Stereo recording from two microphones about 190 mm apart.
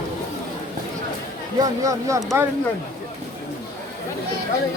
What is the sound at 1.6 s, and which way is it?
Speech, 15° right (ahead or behind).